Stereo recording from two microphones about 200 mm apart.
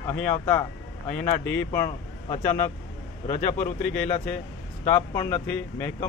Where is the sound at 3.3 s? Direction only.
35° left (ahead or behind).